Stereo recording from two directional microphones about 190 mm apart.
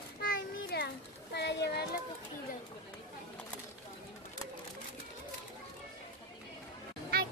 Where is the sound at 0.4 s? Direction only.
60° left (ahead or behind).